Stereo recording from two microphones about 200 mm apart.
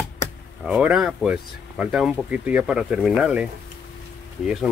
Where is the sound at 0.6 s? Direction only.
5° right (ahead or behind).